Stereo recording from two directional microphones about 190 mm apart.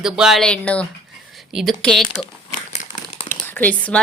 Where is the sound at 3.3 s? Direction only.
10° left (ahead or behind).